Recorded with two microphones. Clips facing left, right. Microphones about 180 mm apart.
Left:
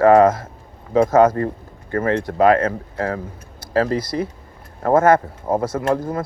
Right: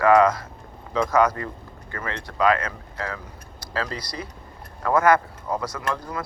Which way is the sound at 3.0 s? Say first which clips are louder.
Left 7 dB; 50° left (ahead or behind).